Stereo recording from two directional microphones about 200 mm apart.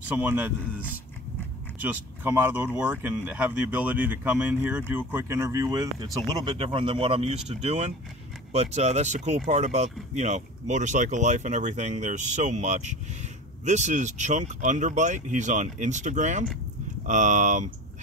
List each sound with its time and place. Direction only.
0.1 s speech: 10° right (ahead or behind)
1.8 s speech: 10° right (ahead or behind); by 17.6 s 40° right (ahead or behind)